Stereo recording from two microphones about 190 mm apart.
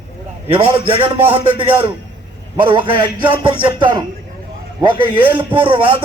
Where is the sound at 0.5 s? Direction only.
30° right (ahead or behind).